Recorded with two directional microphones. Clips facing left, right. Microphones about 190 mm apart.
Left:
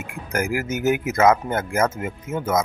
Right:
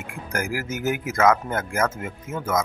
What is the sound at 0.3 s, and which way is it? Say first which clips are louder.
Speech: left 4 dB; 20° left (ahead or behind).